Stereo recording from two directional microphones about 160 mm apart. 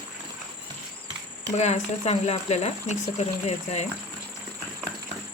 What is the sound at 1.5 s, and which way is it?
Speech, 45° left (ahead or behind).